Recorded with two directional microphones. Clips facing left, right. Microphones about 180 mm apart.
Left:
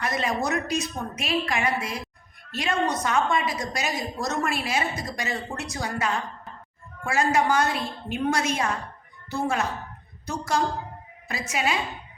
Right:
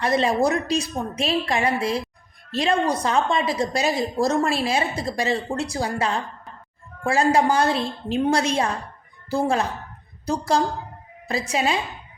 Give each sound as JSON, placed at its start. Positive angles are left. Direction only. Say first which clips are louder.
{"t": 0.0, "sound": "a woman's voice", "louder": "right 7 dB", "side_deg": -30}